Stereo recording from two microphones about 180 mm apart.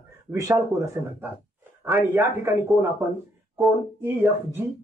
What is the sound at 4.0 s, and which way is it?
Speech, 10° right (ahead or behind).